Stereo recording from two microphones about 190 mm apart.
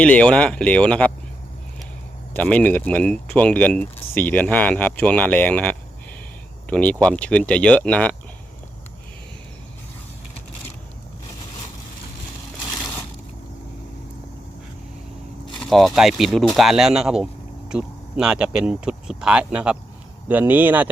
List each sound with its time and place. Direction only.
0.0 s speech: 5° left (ahead or behind)
2.3 s speech: 10° left (ahead or behind)
12.8 s a sound: 15° left (ahead or behind)
15.7 s speech: centre (ahead or behind)